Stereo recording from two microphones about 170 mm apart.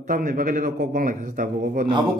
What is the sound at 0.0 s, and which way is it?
A man's voice, 55° right (ahead or behind).